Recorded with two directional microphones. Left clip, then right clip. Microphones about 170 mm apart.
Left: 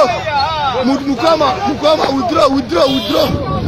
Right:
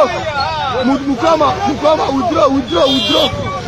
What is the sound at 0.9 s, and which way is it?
A man's voice, centre (ahead or behind).